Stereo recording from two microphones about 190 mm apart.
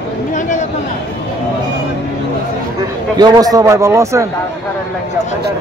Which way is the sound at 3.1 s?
20° right (ahead or behind).